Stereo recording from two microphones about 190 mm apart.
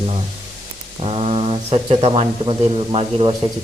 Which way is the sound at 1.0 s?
30° right (ahead or behind).